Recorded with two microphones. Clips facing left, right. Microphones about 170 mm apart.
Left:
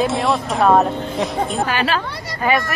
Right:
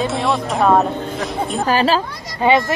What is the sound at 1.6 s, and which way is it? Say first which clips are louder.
Speech: right 4 dB; 35° right (ahead or behind).